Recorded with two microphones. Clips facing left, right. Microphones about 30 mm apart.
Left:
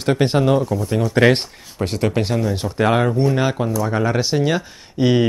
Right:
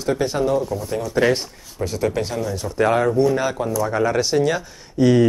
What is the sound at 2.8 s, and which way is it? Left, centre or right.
Speech, left.